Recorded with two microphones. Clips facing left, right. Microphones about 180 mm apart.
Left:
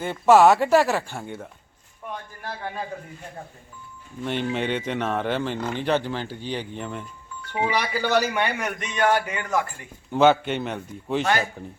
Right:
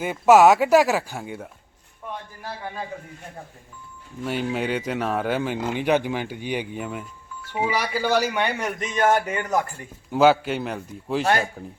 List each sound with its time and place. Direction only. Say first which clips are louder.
0.0 s speech: right 1 dB; 10° right (ahead or behind)
4.2 s speech: even; 5° right (ahead or behind)
8.8 s speech: right 2 dB; 40° right (ahead or behind)
10.1 s a man's voice: right 1 dB; 5° right (ahead or behind)